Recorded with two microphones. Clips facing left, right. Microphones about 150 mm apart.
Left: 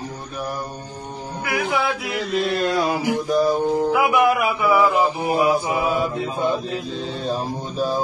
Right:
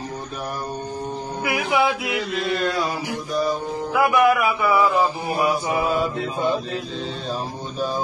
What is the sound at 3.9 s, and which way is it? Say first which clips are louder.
Speech: left 1 dB; 10° left (ahead or behind).